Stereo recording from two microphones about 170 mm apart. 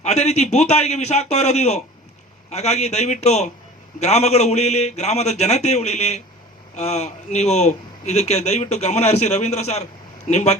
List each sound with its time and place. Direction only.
0.0 s a man's voice: 40° left (ahead or behind)